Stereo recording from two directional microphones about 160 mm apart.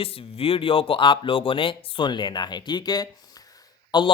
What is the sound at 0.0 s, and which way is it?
A man's voice, 35° left (ahead or behind).